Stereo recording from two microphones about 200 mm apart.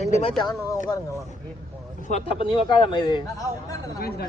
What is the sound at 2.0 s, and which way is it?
Speech, 35° left (ahead or behind).